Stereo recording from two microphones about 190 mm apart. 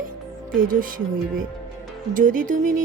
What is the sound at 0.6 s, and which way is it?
Speech, 45° right (ahead or behind).